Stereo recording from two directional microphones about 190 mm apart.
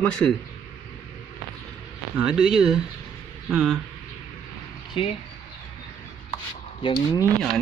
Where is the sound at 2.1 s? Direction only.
5° right (ahead or behind).